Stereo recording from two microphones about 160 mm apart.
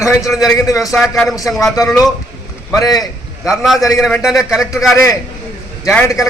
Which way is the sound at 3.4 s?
5° right (ahead or behind).